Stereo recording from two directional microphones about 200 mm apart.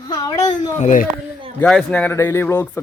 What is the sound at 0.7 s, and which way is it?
Speech, 40° left (ahead or behind).